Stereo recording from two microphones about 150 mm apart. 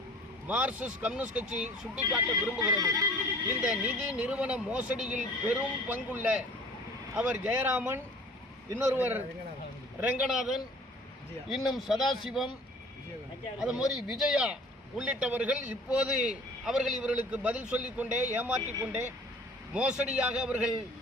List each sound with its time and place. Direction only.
0.4 s a man's voice: 10° right (ahead or behind)
2.6 s speech: 20° right (ahead or behind)
3.6 s a man's voice: 5° right (ahead or behind)
13.6 s a man's voice: 5° right (ahead or behind)